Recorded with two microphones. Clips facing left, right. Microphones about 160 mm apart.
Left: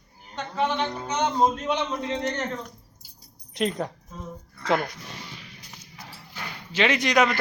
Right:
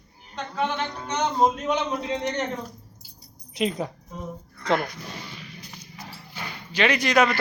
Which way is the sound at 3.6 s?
Centre (ahead or behind).